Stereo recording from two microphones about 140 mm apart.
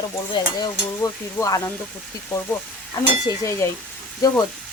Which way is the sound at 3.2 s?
20° left (ahead or behind).